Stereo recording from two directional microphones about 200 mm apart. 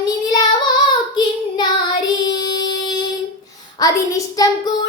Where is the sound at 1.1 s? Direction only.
20° left (ahead or behind).